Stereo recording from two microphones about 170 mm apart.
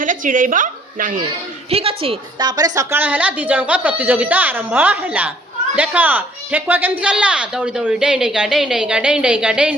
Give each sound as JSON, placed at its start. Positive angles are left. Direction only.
{"t": 0.0, "sound": "a woman's voice", "side_deg": -50}
{"t": 1.7, "sound": "speech", "side_deg": -35}